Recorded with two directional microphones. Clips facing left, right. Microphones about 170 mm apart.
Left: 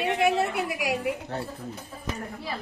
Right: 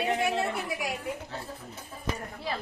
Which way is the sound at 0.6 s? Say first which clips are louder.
Left 5 dB; 85° left.